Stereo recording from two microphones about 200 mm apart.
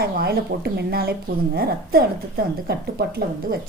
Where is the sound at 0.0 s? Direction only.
50° right (ahead or behind).